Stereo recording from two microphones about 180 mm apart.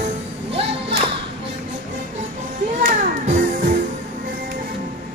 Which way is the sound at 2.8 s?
45° right (ahead or behind).